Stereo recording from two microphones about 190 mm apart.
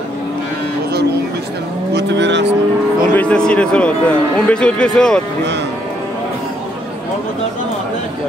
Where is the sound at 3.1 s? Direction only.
5° left (ahead or behind).